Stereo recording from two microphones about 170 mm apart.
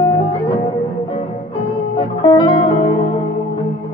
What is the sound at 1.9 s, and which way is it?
Music, 30° left (ahead or behind).